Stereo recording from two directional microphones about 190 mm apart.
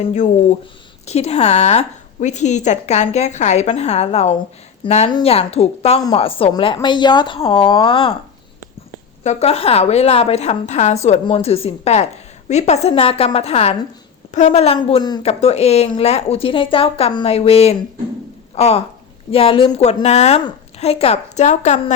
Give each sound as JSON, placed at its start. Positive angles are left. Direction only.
{"t": 1.0, "sound": "a woman's voice", "side_deg": 35}
{"t": 9.2, "sound": "a woman's voice", "side_deg": 35}